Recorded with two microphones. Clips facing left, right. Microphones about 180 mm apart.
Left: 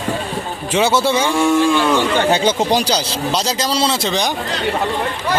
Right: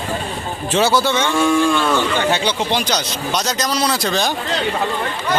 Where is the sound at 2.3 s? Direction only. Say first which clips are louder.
Left 4 dB; 40° left (ahead or behind); by 4.3 s 20° left (ahead or behind).